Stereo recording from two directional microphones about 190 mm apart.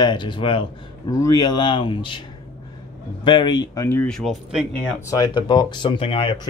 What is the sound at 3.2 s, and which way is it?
Speech, 25° left (ahead or behind).